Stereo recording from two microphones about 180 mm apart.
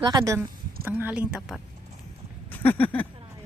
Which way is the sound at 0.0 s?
25° right (ahead or behind).